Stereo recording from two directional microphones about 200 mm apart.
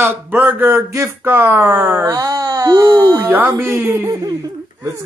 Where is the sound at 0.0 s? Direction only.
10° right (ahead or behind).